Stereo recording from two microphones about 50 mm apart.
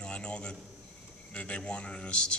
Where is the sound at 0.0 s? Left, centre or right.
Left.